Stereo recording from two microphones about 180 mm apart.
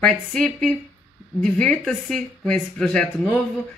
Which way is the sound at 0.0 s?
5° left (ahead or behind).